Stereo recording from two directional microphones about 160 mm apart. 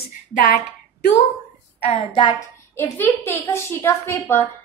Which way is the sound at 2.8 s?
15° left (ahead or behind).